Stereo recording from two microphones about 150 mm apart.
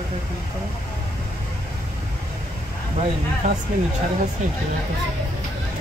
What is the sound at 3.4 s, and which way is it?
Speech, 55° right (ahead or behind).